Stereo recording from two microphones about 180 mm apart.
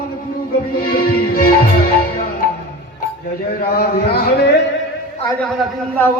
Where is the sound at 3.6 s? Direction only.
60° left (ahead or behind).